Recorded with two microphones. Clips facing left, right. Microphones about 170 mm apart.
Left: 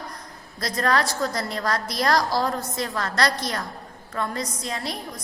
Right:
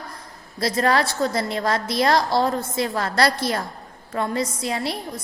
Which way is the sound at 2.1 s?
25° right (ahead or behind).